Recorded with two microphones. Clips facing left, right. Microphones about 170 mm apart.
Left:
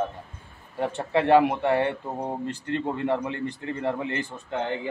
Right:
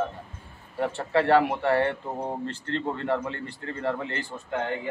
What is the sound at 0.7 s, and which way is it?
A man's voice, 20° left (ahead or behind).